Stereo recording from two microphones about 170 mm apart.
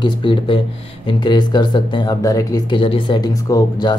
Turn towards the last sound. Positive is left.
turn(degrees=20)  # may be behind; listen again after turning